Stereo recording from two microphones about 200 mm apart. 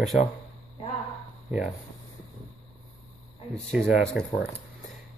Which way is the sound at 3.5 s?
Centre (ahead or behind).